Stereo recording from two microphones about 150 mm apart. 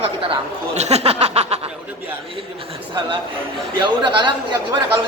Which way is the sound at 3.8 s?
30° right (ahead or behind).